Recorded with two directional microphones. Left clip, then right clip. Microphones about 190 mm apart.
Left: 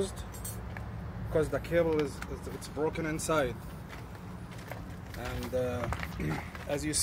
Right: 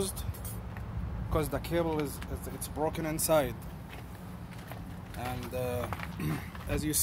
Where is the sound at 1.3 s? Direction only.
55° right (ahead or behind).